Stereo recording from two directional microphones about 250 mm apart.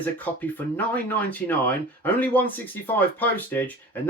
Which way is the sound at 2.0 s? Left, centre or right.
Centre.